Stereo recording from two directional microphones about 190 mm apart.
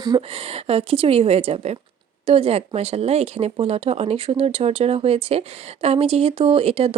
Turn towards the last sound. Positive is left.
turn(degrees=-30)  # may be behind; listen again after turning